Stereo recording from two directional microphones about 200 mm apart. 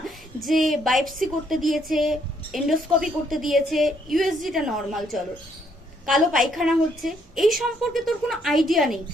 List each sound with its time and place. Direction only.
0.4 s a woman's voice: centre (ahead or behind)